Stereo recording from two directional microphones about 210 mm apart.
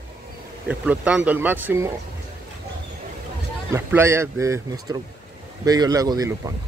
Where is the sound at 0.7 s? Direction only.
5° right (ahead or behind).